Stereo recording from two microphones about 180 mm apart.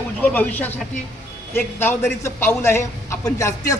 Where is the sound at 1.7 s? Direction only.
15° left (ahead or behind).